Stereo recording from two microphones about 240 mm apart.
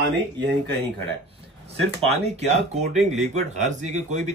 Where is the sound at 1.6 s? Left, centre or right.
Right.